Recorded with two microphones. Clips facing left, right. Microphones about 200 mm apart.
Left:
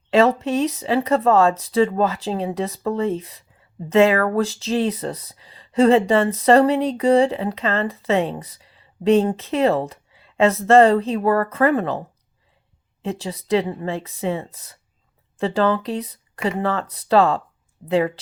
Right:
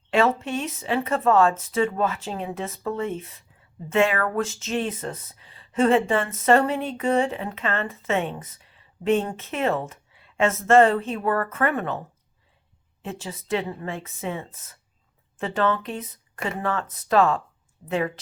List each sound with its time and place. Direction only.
0.3 s speech: 35° left (ahead or behind)